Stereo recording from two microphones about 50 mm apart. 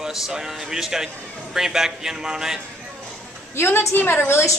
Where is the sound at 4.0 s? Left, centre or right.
Left.